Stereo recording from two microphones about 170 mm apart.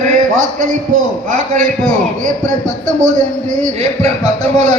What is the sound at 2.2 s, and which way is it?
A man's voice, 50° right (ahead or behind).